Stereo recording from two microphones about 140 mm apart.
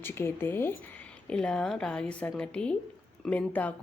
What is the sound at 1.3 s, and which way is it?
A woman's voice, 5° left (ahead or behind).